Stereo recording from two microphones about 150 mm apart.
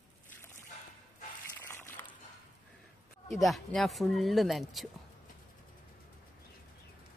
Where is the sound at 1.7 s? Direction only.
15° left (ahead or behind).